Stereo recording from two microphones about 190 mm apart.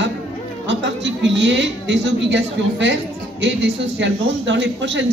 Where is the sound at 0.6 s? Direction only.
70° right (ahead or behind).